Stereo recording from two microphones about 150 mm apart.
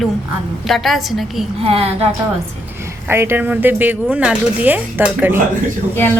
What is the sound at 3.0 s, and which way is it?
Speech, 15° right (ahead or behind).